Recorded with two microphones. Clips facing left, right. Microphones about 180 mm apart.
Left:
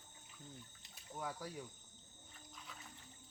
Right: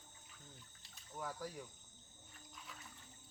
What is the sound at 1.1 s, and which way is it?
Speech, 5° left (ahead or behind).